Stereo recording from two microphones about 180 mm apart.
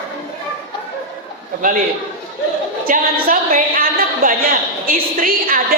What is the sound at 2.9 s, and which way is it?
Speech, 45° right (ahead or behind).